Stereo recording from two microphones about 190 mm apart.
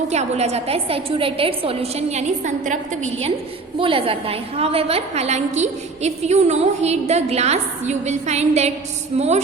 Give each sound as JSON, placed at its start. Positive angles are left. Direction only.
{"t": 0.1, "sound": "a woman's voice", "side_deg": -35}